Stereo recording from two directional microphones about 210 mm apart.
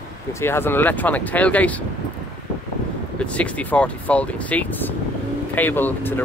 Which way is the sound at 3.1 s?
5° left (ahead or behind).